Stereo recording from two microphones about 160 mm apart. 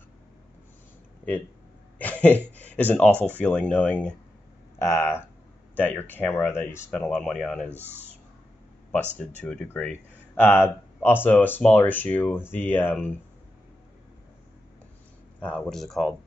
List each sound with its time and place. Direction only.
2.0 s speech: 10° left (ahead or behind)
9.4 s speech: 5° left (ahead or behind)
15.4 s speech: 5° left (ahead or behind)